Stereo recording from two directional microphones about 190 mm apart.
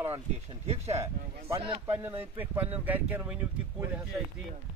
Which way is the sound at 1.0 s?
15° right (ahead or behind).